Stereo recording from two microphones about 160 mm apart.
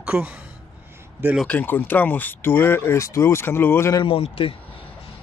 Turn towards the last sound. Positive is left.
turn(degrees=35)  # may be behind; listen again after turning